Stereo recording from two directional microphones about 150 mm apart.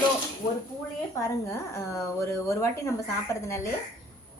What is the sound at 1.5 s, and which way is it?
A child's voice, 20° left (ahead or behind).